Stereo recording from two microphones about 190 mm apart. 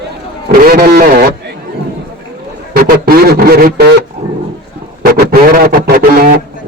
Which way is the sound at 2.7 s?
50° right (ahead or behind).